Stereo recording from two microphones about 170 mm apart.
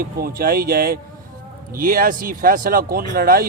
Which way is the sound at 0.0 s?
60° right (ahead or behind).